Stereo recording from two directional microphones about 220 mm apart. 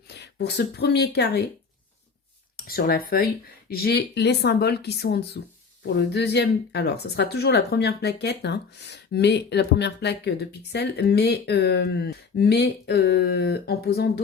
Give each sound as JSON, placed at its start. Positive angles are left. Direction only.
{"t": 0.1, "sound": "speech", "side_deg": 50}
{"t": 2.6, "sound": "speech", "side_deg": 45}